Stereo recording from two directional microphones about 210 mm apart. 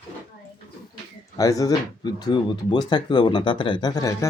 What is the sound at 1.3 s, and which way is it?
Speech, 15° left (ahead or behind).